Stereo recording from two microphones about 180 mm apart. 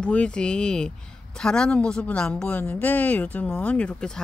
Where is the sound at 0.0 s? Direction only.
5° left (ahead or behind).